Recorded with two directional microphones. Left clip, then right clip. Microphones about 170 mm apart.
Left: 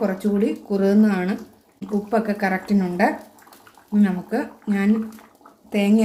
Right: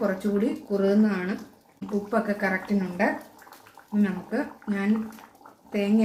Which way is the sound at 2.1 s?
35° left (ahead or behind).